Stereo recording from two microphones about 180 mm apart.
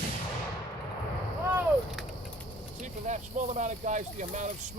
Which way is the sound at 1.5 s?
Centre (ahead or behind).